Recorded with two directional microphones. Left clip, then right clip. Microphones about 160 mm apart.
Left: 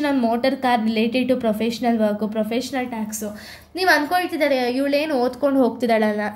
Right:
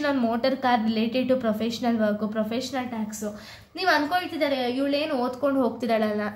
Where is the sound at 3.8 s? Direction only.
35° left (ahead or behind).